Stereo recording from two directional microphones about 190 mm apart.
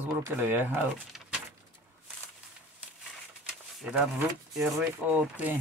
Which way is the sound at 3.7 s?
5° right (ahead or behind).